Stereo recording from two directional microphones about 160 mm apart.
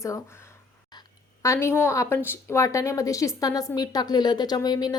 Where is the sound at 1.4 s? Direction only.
20° left (ahead or behind).